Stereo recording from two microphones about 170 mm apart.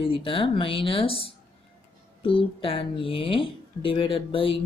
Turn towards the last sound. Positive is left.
turn(degrees=30)  # may be behind; listen again after turning